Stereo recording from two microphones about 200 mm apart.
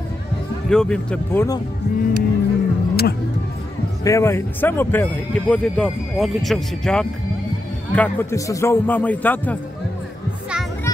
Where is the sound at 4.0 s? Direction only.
15° left (ahead or behind).